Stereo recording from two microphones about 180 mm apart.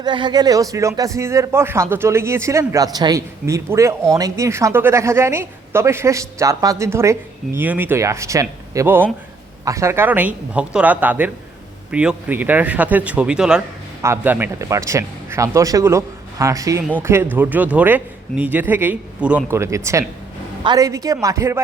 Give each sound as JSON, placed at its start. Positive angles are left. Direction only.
{"t": 0.0, "sound": "speech", "side_deg": -25}